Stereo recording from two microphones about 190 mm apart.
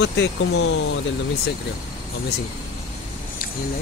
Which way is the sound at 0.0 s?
70° left (ahead or behind).